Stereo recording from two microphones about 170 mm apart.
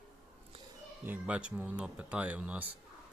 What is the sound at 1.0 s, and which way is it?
Speech, 10° right (ahead or behind).